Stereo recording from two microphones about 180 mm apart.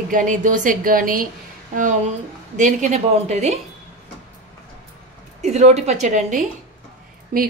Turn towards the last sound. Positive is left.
turn(degrees=-45)  # may be behind; listen again after turning